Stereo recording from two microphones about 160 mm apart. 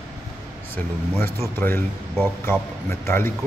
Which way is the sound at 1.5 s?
15° left (ahead or behind).